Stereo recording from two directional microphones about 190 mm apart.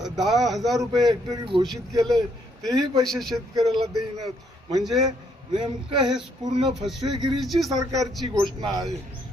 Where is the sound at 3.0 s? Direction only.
Centre (ahead or behind).